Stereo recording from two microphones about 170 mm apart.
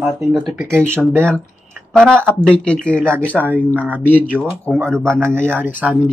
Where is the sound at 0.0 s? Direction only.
Centre (ahead or behind).